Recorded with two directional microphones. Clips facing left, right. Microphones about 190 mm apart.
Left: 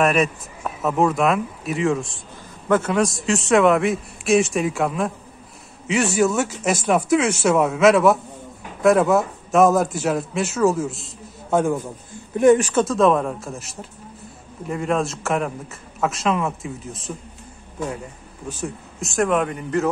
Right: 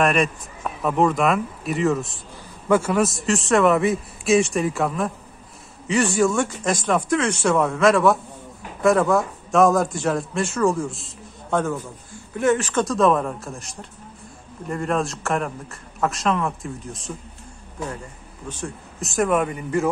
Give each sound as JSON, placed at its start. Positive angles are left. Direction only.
{"t": 0.0, "sound": "a man's voice", "side_deg": 5}
{"t": 11.8, "sound": "speech", "side_deg": 15}
{"t": 12.8, "sound": "a man's voice", "side_deg": 0}
{"t": 18.5, "sound": "a man's voice", "side_deg": 5}